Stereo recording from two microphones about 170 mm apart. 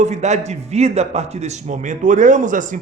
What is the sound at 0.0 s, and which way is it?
Speech, 45° right (ahead or behind).